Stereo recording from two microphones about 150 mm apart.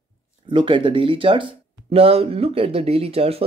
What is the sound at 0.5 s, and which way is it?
Speech, 35° right (ahead or behind).